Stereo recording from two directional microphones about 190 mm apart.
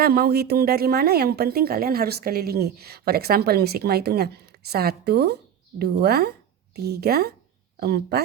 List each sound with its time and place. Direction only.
0.0 s a woman's voice: 55° right (ahead or behind)